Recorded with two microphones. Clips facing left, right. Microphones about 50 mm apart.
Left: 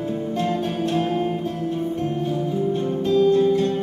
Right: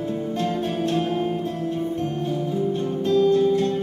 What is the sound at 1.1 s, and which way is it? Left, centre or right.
Music, centre.